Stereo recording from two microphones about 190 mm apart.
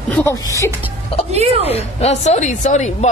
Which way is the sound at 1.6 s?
35° left (ahead or behind).